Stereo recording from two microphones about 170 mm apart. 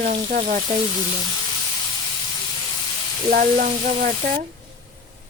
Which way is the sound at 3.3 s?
50° right (ahead or behind).